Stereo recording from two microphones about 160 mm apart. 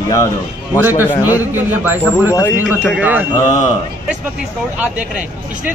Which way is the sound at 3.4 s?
20° left (ahead or behind).